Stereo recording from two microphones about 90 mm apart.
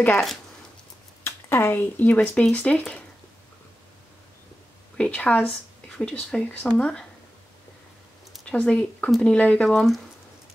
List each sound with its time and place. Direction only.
1.2 s speech: 30° left (ahead or behind); by 3.0 s 10° left (ahead or behind)
4.9 s speech: 10° left (ahead or behind)
8.5 s speech: 10° left (ahead or behind)